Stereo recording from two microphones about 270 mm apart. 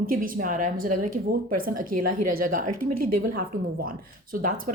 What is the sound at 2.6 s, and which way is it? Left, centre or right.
Speech, right.